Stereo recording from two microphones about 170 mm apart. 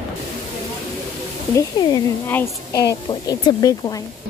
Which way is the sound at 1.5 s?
20° left (ahead or behind).